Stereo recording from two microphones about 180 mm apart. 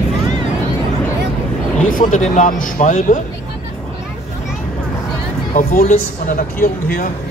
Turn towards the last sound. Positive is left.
turn(degrees=45)  # may be behind; listen again after turning